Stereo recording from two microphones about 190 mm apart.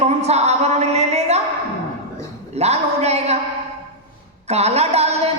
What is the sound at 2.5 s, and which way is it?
Speech, 35° right (ahead or behind).